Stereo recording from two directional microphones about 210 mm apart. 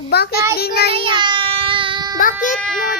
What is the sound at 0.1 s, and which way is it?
Child singing, 50° left (ahead or behind).